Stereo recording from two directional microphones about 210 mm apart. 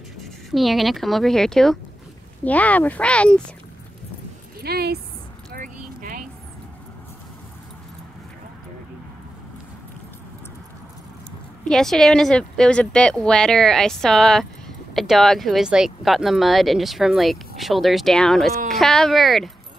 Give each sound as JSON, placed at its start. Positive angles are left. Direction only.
{"t": 0.2, "sound": "speech", "side_deg": 0}
{"t": 4.6, "sound": "a woman's voice", "side_deg": -50}
{"t": 5.5, "sound": "keys jangling", "side_deg": -40}
{"t": 11.6, "sound": "speech", "side_deg": 0}